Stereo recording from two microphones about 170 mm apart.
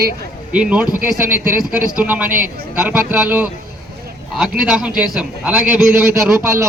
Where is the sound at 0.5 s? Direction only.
5° right (ahead or behind).